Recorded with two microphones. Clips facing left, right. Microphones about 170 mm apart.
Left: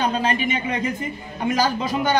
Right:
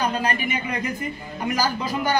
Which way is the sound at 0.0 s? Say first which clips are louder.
Left 2 dB; 25° left (ahead or behind).